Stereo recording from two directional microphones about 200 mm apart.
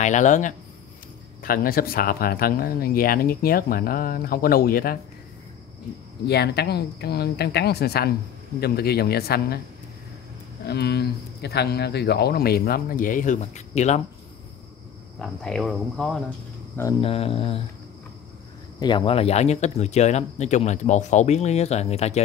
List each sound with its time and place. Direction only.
0.0 s speech: 35° left (ahead or behind)
6.2 s speech: 55° left (ahead or behind)
10.6 s speech: 55° left (ahead or behind); by 14.0 s 35° left (ahead or behind)
15.1 s speech: centre (ahead or behind)
17.0 s mantra: 30° left (ahead or behind)
18.8 s speech: 25° left (ahead or behind)